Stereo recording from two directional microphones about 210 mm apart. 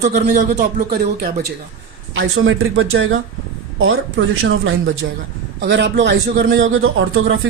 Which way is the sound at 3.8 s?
80° right.